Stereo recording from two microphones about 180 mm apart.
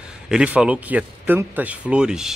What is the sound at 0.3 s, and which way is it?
Speech, 5° right (ahead or behind).